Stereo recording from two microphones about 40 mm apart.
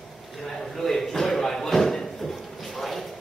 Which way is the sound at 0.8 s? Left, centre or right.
Centre.